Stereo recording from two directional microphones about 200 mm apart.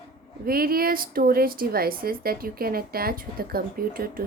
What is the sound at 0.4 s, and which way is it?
Speech, 50° right (ahead or behind).